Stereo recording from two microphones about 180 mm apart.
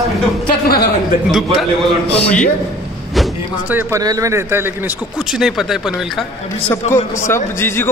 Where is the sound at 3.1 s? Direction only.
Centre (ahead or behind).